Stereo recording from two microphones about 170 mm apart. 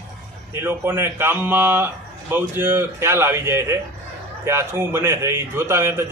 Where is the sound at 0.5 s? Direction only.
10° right (ahead or behind).